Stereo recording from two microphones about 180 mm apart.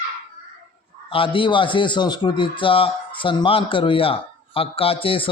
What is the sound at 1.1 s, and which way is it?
A man's voice, 30° left (ahead or behind).